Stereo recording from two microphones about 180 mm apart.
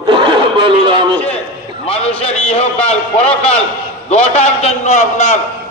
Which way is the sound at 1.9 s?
35° left (ahead or behind).